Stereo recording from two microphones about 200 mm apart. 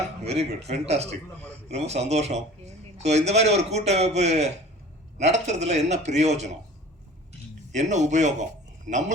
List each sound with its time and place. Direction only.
0.3 s a man's voice: 30° right (ahead or behind)
7.7 s a man's voice: 35° right (ahead or behind)